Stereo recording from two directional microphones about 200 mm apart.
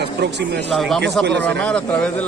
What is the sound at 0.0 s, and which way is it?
Speech, 55° right (ahead or behind).